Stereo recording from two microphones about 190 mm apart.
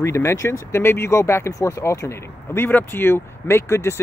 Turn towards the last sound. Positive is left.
turn(degrees=15)  # may be behind; listen again after turning